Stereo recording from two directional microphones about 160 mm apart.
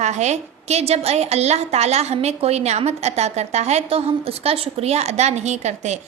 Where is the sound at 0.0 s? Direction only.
45° right (ahead or behind).